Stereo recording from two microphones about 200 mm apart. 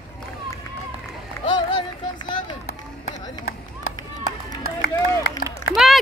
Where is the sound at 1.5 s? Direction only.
20° left (ahead or behind).